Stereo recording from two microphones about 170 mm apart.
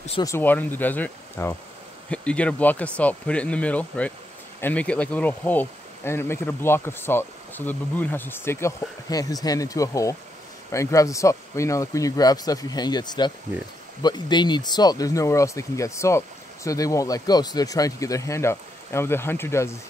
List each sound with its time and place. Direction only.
0.2 s speech: 15° left (ahead or behind)